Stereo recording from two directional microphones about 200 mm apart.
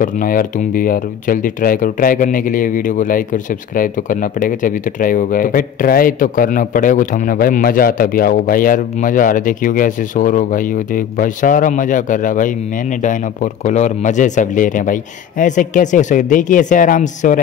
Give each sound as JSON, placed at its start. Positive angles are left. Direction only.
{"t": 0.0, "sound": "speech", "side_deg": 45}